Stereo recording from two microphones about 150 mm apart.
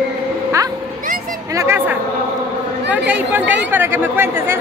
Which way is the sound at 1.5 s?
15° right (ahead or behind).